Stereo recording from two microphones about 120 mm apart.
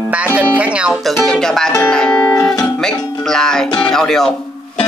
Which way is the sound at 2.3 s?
30° left (ahead or behind).